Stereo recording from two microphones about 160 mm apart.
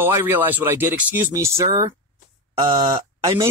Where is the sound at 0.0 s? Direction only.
15° right (ahead or behind).